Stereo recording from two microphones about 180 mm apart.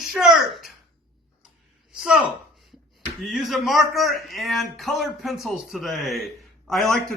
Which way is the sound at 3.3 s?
Centre (ahead or behind).